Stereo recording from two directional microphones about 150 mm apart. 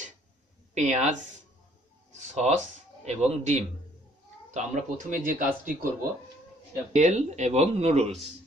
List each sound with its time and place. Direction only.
0.7 s speech: 50° right (ahead or behind)
2.1 s speech: 50° right (ahead or behind)
6.9 s speech: 50° right (ahead or behind)